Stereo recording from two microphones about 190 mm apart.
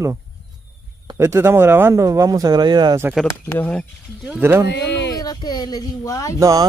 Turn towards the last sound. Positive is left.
turn(degrees=-20)  # may be behind; listen again after turning